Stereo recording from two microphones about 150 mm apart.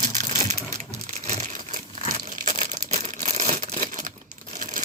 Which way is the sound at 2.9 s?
50° right (ahead or behind).